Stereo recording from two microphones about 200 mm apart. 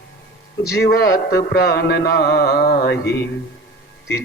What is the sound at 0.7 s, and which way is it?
Music, 50° left (ahead or behind).